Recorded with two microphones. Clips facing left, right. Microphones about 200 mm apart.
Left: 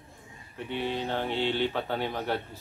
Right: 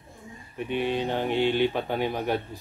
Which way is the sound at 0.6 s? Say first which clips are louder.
Right 5 dB; 15° right (ahead or behind).